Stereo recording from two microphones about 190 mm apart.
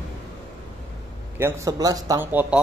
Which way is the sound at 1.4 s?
15° right (ahead or behind).